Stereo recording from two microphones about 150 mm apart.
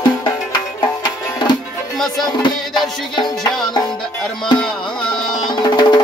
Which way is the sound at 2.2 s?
30° left (ahead or behind).